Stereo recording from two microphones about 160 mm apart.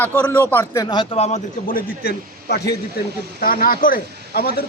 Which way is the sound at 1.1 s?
40° left (ahead or behind).